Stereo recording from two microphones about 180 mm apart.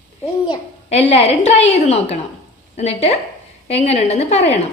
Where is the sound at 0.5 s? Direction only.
35° left (ahead or behind).